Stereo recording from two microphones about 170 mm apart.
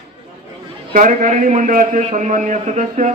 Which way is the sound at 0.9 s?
50° right (ahead or behind).